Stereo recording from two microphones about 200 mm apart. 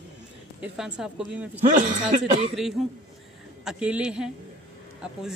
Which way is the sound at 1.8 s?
40° right (ahead or behind).